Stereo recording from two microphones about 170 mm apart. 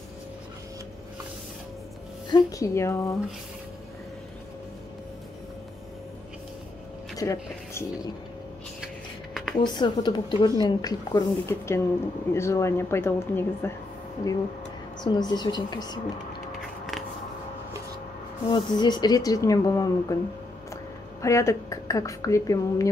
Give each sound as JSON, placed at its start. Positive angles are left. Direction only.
{"t": 2.5, "sound": "a woman's voice", "side_deg": 15}
{"t": 7.2, "sound": "speech", "side_deg": 20}
{"t": 8.8, "sound": "a sound", "side_deg": 0}
{"t": 9.6, "sound": "a woman's voice", "side_deg": 25}
{"t": 15.0, "sound": "a woman's voice", "side_deg": 25}
{"t": 18.5, "sound": "a woman's voice", "side_deg": 25}